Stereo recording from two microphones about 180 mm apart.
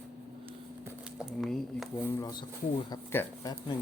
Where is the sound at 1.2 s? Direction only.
Centre (ahead or behind).